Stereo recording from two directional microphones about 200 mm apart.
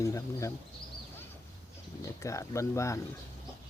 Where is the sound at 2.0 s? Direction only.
15° left (ahead or behind).